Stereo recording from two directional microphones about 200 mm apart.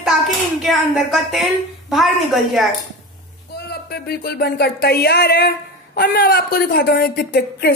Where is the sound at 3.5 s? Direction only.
55° left (ahead or behind).